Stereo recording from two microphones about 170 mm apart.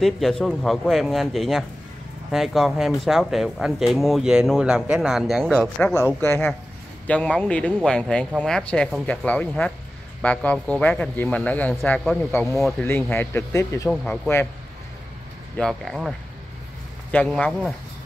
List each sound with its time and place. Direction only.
0.0 s speech: centre (ahead or behind)
6.2 s speech: 15° left (ahead or behind)
12.5 s speech: centre (ahead or behind)
12.8 s speech: 15° left (ahead or behind)
15.5 s speech: 5° left (ahead or behind)